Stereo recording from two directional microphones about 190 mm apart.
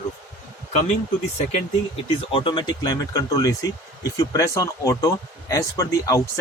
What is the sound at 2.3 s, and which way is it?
Speech, 25° left (ahead or behind).